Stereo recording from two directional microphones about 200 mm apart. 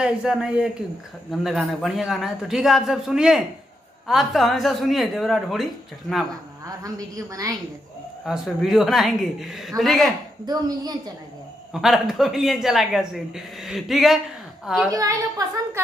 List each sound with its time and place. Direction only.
0.0 s speech: 5° right (ahead or behind)
6.8 s a woman's voice: 15° right (ahead or behind)
8.3 s speech: centre (ahead or behind)
10.4 s speech: 20° right (ahead or behind)
11.7 s speech: centre (ahead or behind)
14.9 s a woman's voice: 15° right (ahead or behind)